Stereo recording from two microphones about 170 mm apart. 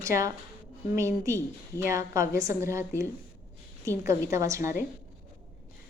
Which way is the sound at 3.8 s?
15° right (ahead or behind).